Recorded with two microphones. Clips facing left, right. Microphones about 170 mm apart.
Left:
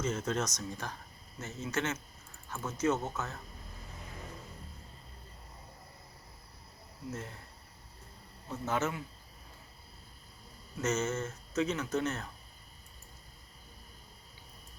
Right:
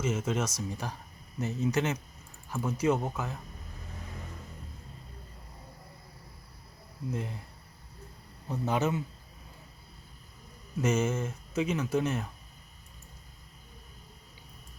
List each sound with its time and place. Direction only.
0.0 s speech: 10° right (ahead or behind)
7.1 s speech: 15° right (ahead or behind)
8.4 s speech: 15° right (ahead or behind)
10.8 s speech: 10° right (ahead or behind)